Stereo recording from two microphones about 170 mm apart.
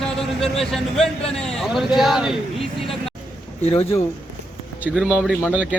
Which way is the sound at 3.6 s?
35° left (ahead or behind).